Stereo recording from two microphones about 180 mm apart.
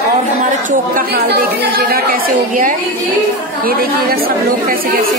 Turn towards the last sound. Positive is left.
turn(degrees=-55)  # may be behind; listen again after turning